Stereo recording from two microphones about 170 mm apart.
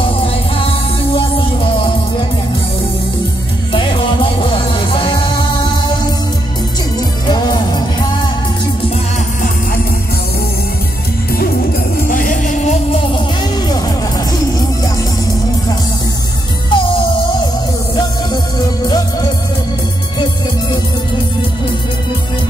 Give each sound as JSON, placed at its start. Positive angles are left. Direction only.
{"t": 0.6, "sound": "music", "side_deg": 30}
{"t": 3.7, "sound": "music", "side_deg": 30}
{"t": 7.2, "sound": "music", "side_deg": 25}
{"t": 12.1, "sound": "music", "side_deg": 50}
{"t": 16.7, "sound": "music", "side_deg": 30}